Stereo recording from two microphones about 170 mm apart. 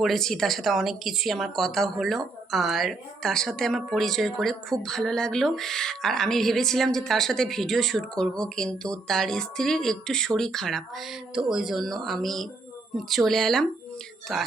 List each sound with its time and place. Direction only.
0.0 s speech: centre (ahead or behind)